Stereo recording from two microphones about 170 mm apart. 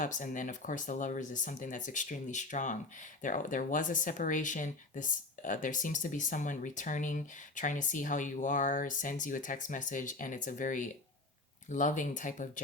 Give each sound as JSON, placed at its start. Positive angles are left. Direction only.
{"t": 0.0, "sound": "speech", "side_deg": 50}